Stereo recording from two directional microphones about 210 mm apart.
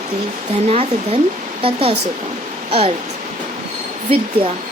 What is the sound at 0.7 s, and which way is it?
Speech, 30° right (ahead or behind).